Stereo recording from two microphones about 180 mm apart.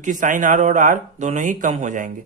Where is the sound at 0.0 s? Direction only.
45° right (ahead or behind).